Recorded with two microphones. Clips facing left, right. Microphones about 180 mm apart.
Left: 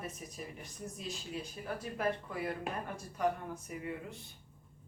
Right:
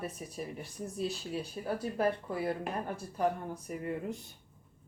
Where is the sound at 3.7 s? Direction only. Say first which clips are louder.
Right 7 dB; 45° right (ahead or behind).